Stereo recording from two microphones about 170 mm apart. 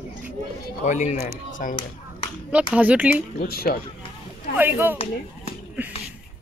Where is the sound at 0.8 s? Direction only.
45° left (ahead or behind).